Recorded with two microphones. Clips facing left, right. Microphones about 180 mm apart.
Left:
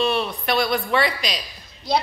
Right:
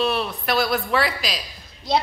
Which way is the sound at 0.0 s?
Centre (ahead or behind).